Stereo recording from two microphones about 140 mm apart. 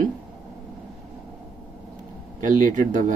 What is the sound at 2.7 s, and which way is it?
Speech, 65° right (ahead or behind).